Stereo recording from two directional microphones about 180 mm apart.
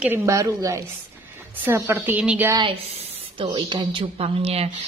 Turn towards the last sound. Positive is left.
turn(degrees=-35)  # may be behind; listen again after turning